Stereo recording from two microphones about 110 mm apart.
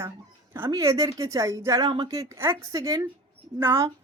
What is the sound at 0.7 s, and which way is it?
Speech, 30° right (ahead or behind).